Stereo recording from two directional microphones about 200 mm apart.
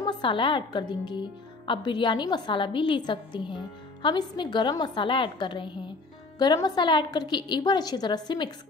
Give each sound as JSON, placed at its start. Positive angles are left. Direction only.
{"t": 0.0, "sound": "a woman's voice", "side_deg": 25}